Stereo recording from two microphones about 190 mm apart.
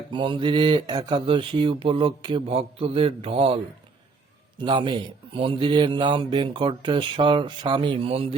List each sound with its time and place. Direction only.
0.1 s a man's voice: 25° right (ahead or behind)
4.6 s a man's voice: 25° right (ahead or behind)